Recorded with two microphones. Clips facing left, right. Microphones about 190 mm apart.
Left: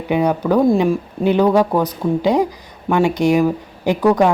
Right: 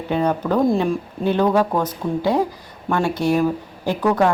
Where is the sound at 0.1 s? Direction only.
10° left (ahead or behind).